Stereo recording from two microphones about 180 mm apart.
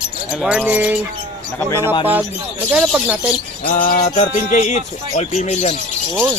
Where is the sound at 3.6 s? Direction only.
45° left (ahead or behind).